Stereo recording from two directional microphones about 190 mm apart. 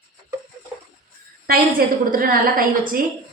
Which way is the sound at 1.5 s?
50° right (ahead or behind).